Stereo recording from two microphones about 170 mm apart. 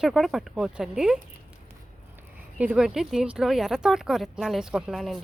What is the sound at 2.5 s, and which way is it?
Speech, 5° right (ahead or behind).